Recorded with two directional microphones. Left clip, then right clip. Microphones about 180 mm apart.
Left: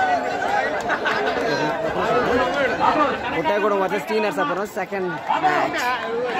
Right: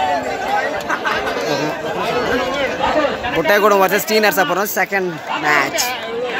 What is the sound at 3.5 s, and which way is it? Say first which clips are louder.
Speech: right 8 dB; 15° right (ahead or behind).